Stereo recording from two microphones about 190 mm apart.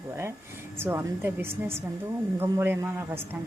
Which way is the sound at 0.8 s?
10° right (ahead or behind).